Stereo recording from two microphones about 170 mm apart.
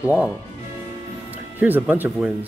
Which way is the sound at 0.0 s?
10° right (ahead or behind).